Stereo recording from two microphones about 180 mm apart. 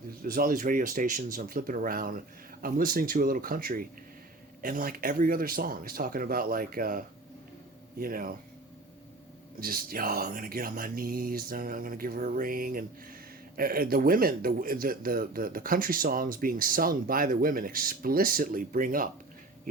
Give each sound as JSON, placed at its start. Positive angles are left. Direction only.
{"t": 0.2, "sound": "speech", "side_deg": -55}
{"t": 9.6, "sound": "speech", "side_deg": -55}